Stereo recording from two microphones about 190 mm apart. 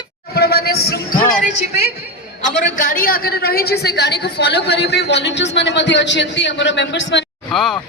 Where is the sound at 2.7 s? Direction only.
45° left (ahead or behind); by 7.3 s 65° left (ahead or behind).